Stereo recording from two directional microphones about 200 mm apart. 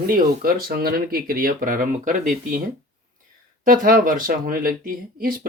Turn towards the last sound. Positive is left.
turn(degrees=-45)  # may be behind; listen again after turning